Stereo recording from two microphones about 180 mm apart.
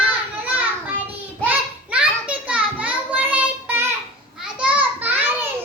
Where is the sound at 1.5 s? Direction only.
5° right (ahead or behind).